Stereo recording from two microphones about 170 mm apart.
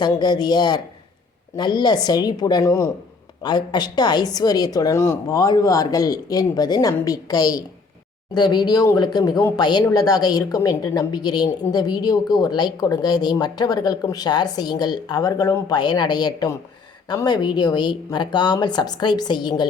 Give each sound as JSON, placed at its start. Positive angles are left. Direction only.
{"t": 0.0, "sound": "speech", "side_deg": 25}